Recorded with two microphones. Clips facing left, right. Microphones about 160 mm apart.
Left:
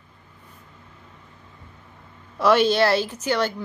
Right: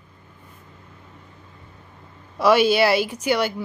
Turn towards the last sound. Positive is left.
turn(degrees=-10)  # may be behind; listen again after turning